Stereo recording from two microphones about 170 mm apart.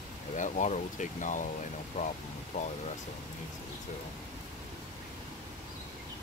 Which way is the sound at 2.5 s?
35° left (ahead or behind).